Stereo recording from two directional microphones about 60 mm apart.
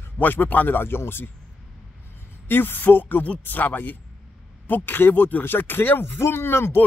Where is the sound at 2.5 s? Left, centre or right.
Left.